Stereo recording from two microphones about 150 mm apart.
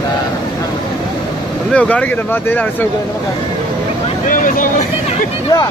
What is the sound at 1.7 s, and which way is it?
Speech, 10° left (ahead or behind).